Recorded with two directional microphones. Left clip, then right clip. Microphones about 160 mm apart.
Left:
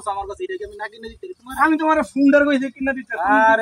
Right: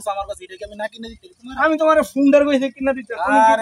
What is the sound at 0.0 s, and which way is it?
Speech, 30° right (ahead or behind).